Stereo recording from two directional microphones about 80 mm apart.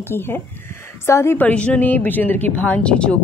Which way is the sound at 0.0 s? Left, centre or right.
Left.